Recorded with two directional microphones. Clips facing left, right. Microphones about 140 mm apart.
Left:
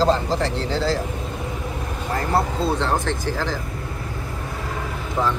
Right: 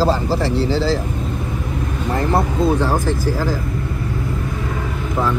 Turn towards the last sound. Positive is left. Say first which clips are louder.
# right 5 dB
turn(degrees=-10)  # may be behind; listen again after turning